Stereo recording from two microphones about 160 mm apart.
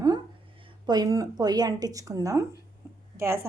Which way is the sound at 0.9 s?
25° right (ahead or behind).